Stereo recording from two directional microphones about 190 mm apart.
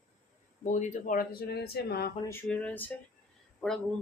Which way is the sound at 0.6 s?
40° left (ahead or behind).